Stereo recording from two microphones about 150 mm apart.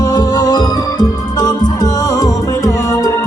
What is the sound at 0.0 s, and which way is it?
Music, 25° left (ahead or behind).